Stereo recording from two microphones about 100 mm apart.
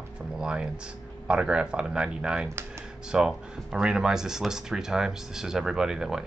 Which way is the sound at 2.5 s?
25° right (ahead or behind).